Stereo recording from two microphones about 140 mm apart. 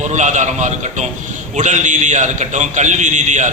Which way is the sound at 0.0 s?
60° right (ahead or behind).